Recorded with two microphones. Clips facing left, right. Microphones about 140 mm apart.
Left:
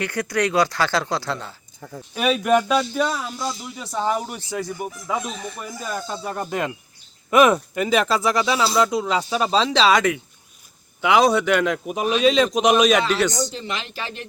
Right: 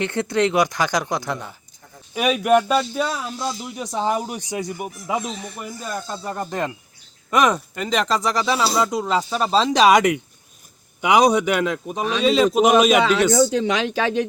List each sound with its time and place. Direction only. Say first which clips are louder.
0.0 s speech: right 3 dB; 25° right (ahead or behind); by 3.5 s centre (ahead or behind)
3.8 s speech: right 1 dB; 15° right (ahead or behind)
5.9 s speech: left 1 dB; 5° left (ahead or behind)
9.7 s speech: right 5 dB; 15° right (ahead or behind)
13.6 s speech: right 10 dB; 90° right